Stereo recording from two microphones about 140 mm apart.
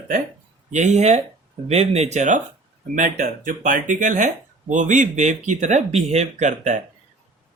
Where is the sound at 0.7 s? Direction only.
55° right (ahead or behind).